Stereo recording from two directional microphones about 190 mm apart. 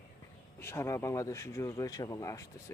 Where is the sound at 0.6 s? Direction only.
15° left (ahead or behind).